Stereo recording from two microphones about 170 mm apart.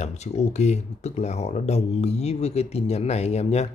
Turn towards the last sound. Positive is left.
turn(degrees=40)  # may be behind; listen again after turning